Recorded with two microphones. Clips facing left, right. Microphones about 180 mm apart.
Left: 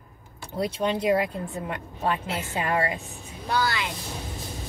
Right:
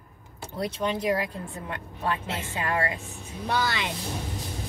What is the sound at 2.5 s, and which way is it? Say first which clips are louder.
Speech: left 2 dB; 25° left (ahead or behind).